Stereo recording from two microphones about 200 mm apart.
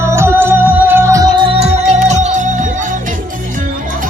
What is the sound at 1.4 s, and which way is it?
Music, 30° right (ahead or behind).